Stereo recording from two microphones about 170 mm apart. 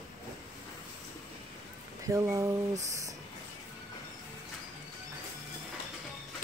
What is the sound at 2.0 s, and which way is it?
A woman's voice, 20° right (ahead or behind).